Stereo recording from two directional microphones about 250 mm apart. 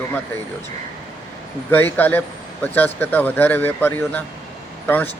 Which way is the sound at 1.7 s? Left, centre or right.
Centre.